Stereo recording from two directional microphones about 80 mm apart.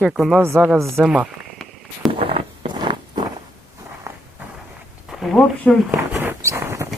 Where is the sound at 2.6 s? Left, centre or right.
Right.